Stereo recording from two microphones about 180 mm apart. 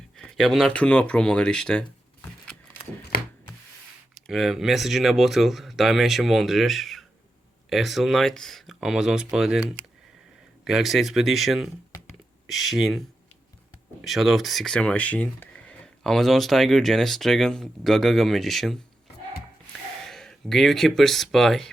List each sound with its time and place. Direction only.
0.2 s speech: centre (ahead or behind)
3.1 s wood: 55° left (ahead or behind)
4.3 s speech: centre (ahead or behind)
14.0 s speech: centre (ahead or behind)
20.1 s speech: centre (ahead or behind)